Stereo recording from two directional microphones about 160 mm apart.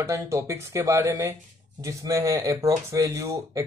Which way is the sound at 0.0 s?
15° right (ahead or behind).